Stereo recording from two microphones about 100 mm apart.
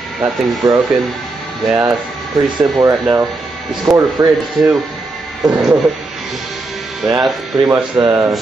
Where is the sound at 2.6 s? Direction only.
40° right (ahead or behind).